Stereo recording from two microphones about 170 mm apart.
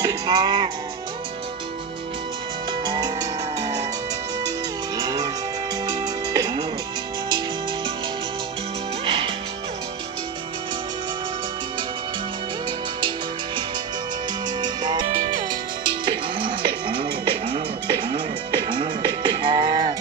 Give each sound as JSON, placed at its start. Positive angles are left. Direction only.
{"t": 0.0, "sound": "music", "side_deg": -20}
{"t": 2.8, "sound": "music", "side_deg": -25}
{"t": 4.9, "sound": "music", "side_deg": -20}
{"t": 9.0, "sound": "music", "side_deg": -30}
{"t": 14.6, "sound": "music", "side_deg": -25}
{"t": 15.0, "sound": "music", "side_deg": -45}
{"t": 15.9, "sound": "music", "side_deg": -30}